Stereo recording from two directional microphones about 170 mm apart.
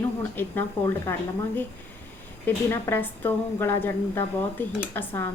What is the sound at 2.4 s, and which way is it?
A woman's voice, 15° left (ahead or behind).